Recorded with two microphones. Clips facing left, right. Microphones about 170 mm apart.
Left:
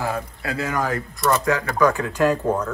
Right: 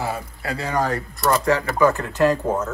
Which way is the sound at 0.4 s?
30° right (ahead or behind).